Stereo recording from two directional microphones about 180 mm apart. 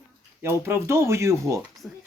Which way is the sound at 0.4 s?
15° right (ahead or behind).